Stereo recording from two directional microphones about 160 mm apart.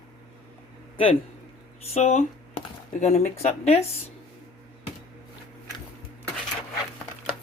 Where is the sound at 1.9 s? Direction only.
45° left (ahead or behind).